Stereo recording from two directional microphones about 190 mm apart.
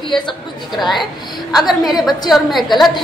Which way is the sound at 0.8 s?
Centre (ahead or behind).